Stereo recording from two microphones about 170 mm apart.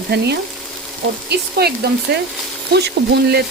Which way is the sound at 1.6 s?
70° right (ahead or behind).